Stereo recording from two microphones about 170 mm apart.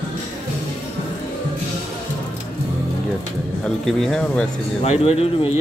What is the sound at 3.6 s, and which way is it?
Speech, 5° left (ahead or behind).